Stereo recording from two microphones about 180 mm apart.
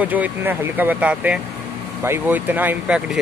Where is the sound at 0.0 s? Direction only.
10° right (ahead or behind).